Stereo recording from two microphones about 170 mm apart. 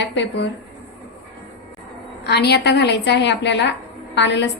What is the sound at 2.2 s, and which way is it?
A woman's voice, 75° left (ahead or behind).